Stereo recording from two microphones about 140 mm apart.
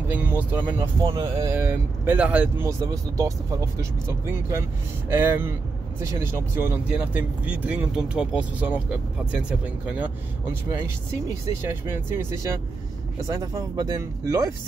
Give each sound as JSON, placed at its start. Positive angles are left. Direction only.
{"t": 0.1, "sound": "speech", "side_deg": -10}
{"t": 1.0, "sound": "speech", "side_deg": -30}
{"t": 1.5, "sound": "speech", "side_deg": -15}
{"t": 11.7, "sound": "speech", "side_deg": -15}